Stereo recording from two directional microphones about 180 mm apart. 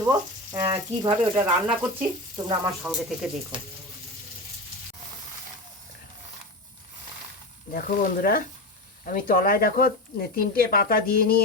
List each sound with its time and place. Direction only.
0.0 s speech: 20° right (ahead or behind)
2.8 s speech: 5° right (ahead or behind)
7.7 s speech: 50° left (ahead or behind)